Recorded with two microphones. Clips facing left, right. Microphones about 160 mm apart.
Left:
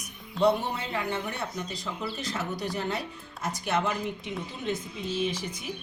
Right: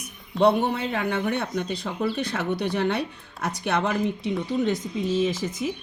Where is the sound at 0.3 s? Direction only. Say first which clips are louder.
Right 4 dB; 65° right (ahead or behind).